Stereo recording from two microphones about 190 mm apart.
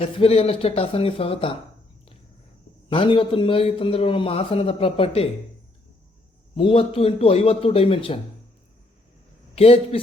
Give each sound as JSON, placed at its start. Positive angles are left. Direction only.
{"t": 0.0, "sound": "a man's voice", "side_deg": 30}
{"t": 2.9, "sound": "a man's voice", "side_deg": 30}
{"t": 6.6, "sound": "a man's voice", "side_deg": 30}
{"t": 9.6, "sound": "a man's voice", "side_deg": 30}